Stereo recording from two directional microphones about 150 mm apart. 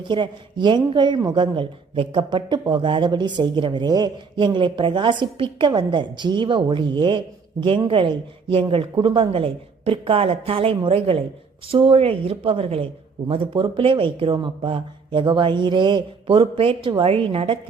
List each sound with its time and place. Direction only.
0.1 s speech: 30° right (ahead or behind)